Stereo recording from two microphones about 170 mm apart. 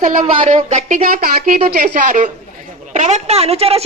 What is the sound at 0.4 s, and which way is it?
A woman's voice, 50° right (ahead or behind).